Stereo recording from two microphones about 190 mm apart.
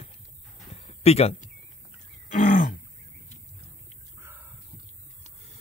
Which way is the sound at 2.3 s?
45° left (ahead or behind).